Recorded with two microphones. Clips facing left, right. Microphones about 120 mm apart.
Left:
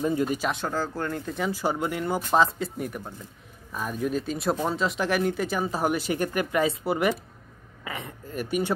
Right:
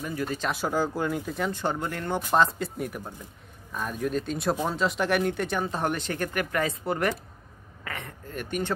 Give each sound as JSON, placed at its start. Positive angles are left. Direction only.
{"t": 0.0, "sound": "speech", "side_deg": 25}
{"t": 0.4, "sound": "speech", "side_deg": -5}
{"t": 7.8, "sound": "a sound", "side_deg": 10}